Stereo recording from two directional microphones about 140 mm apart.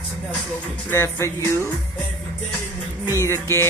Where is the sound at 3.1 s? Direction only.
20° left (ahead or behind).